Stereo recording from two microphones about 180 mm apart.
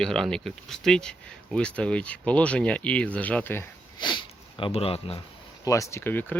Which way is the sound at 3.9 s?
25° left (ahead or behind).